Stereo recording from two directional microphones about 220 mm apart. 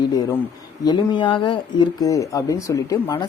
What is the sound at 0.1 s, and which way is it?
Speech, 15° left (ahead or behind).